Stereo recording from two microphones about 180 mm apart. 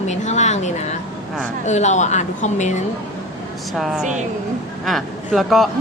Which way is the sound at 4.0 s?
40° right (ahead or behind).